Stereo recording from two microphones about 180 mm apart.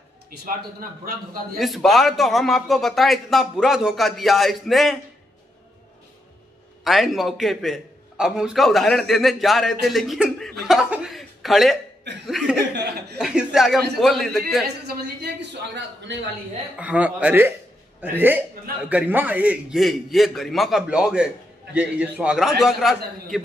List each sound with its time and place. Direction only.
0.5 s a man's voice: 55° right (ahead or behind)
1.6 s a man's voice: centre (ahead or behind)
6.8 s a man's voice: centre (ahead or behind)
12.3 s chuckle: centre (ahead or behind)
13.2 s a man's voice: 5° right (ahead or behind)
14.9 s a man's voice: 70° right (ahead or behind)
16.7 s a man's voice: 5° right (ahead or behind)